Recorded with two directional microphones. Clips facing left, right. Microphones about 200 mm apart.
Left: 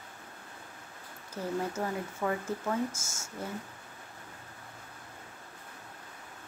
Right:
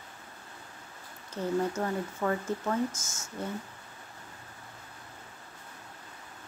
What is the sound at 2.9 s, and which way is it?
Speech, 25° left (ahead or behind).